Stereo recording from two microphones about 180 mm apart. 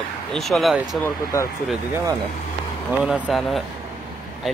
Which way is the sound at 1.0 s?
15° left (ahead or behind).